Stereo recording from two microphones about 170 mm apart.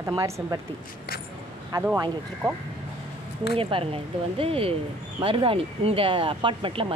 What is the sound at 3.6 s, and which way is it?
Speech, 30° right (ahead or behind).